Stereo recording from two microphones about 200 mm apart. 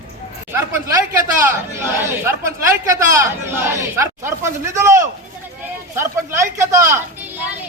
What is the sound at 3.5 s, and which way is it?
A woman's voice, 15° right (ahead or behind).